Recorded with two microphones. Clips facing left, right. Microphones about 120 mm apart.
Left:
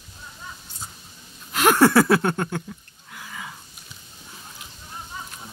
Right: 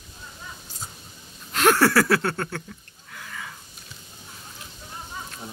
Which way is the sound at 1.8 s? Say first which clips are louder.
Left 3 dB; 20° left (ahead or behind).